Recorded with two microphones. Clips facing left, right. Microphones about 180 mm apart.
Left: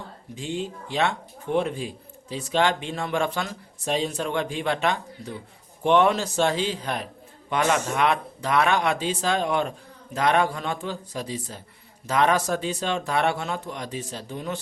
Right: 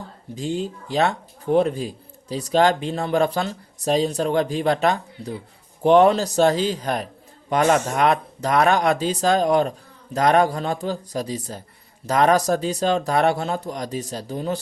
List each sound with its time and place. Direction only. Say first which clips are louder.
0.3 s speech: right 4 dB; 40° right (ahead or behind)